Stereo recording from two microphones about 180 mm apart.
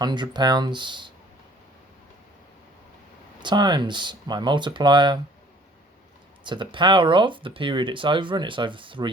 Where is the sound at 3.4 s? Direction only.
25° right (ahead or behind).